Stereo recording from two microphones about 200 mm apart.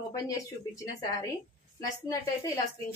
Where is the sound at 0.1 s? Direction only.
15° left (ahead or behind).